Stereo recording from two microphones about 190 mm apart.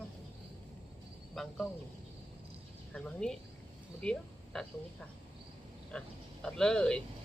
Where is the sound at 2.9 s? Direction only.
5° left (ahead or behind).